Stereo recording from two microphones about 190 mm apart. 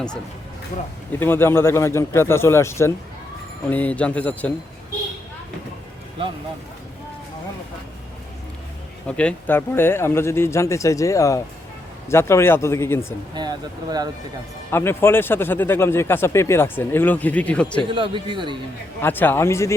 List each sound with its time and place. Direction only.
1.2 s speech: 10° left (ahead or behind)
9.0 s speech: 5° left (ahead or behind)
13.3 s speech: 20° right (ahead or behind)
14.7 s speech: 10° left (ahead or behind)
17.9 s speech: 25° right (ahead or behind)
19.0 s speech: 10° left (ahead or behind)